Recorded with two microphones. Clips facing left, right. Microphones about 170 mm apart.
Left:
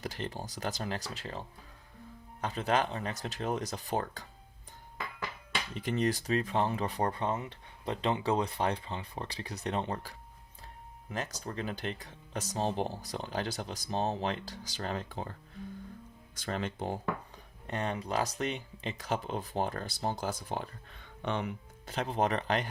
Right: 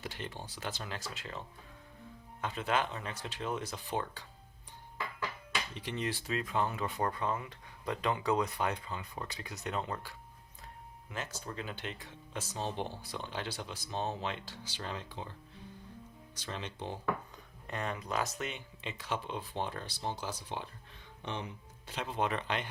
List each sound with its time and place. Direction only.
0.0 s speech: 40° left (ahead or behind)
5.8 s speech: 45° left (ahead or behind)
16.4 s speech: 50° left (ahead or behind)
21.2 s speech: 60° left (ahead or behind); by 22.7 s 40° left (ahead or behind)